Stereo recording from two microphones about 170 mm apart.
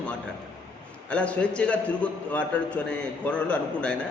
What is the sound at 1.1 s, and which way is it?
A man's voice, 5° left (ahead or behind).